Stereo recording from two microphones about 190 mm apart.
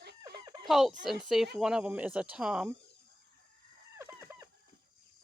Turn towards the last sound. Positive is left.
turn(degrees=-15)  # may be behind; listen again after turning